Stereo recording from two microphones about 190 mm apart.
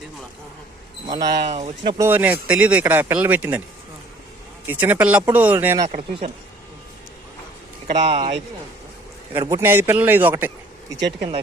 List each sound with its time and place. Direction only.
1.0 s speech: 20° right (ahead or behind)
2.0 s speech: 10° right (ahead or behind)
4.6 s speech: 10° right (ahead or behind)
5.8 s speech: 35° right (ahead or behind)
7.9 s speech: 25° right (ahead or behind)
9.4 s speech: 15° right (ahead or behind)